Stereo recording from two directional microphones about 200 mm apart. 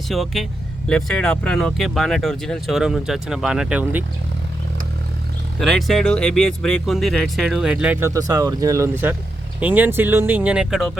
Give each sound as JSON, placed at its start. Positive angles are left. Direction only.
{"t": 0.1, "sound": "speech", "side_deg": 0}
{"t": 5.5, "sound": "speech", "side_deg": 0}